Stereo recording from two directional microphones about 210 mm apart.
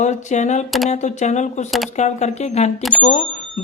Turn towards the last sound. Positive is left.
turn(degrees=35)  # may be behind; listen again after turning